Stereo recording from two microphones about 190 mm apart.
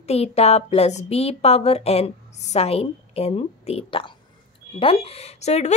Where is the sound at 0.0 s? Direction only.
35° left (ahead or behind).